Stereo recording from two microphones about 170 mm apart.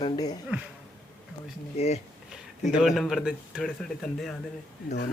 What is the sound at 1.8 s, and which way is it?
Speech, 40° left (ahead or behind).